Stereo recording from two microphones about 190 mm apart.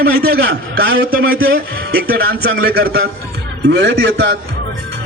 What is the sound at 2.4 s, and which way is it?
A man's voice, 55° right (ahead or behind).